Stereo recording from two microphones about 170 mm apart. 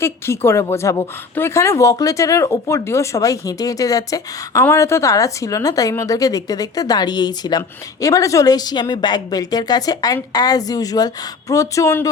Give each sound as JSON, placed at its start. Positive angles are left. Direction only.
{"t": 0.0, "sound": "a woman's voice", "side_deg": 15}